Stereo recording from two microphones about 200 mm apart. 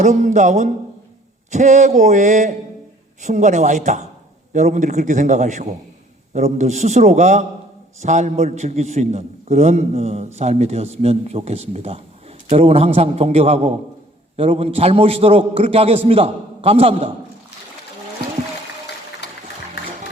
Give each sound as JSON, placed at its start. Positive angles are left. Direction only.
{"t": 0.0, "sound": "a man's voice", "side_deg": -40}